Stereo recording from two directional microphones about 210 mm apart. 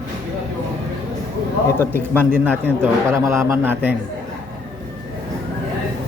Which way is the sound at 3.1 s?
15° right (ahead or behind).